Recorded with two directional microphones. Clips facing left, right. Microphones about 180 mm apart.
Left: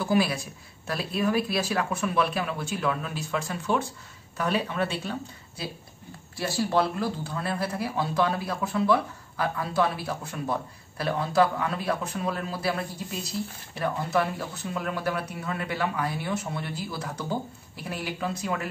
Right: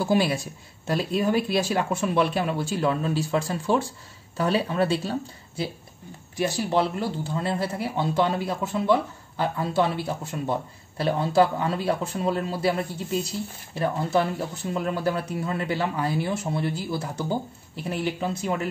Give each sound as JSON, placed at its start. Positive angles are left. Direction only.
{"t": 0.0, "sound": "speech", "side_deg": -30}
{"t": 6.3, "sound": "speech", "side_deg": -15}